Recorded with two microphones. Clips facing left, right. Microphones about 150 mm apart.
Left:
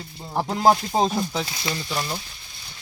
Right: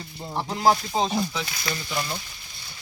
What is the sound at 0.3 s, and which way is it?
Speech, 45° left (ahead or behind).